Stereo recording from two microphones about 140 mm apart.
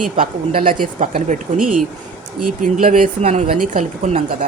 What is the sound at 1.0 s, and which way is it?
A woman's voice, 65° right (ahead or behind).